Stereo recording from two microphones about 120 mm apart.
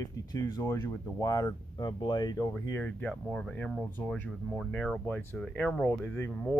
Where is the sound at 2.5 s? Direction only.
15° left (ahead or behind).